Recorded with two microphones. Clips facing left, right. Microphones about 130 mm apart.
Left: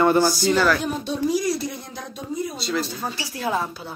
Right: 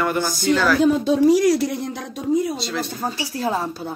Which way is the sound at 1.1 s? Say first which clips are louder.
Right 5 dB; 85° right.